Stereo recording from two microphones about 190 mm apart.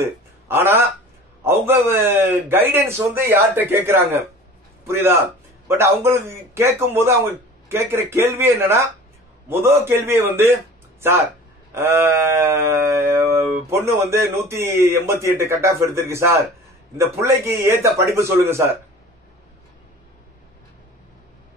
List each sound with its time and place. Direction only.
0.0 s a man's voice: 10° right (ahead or behind)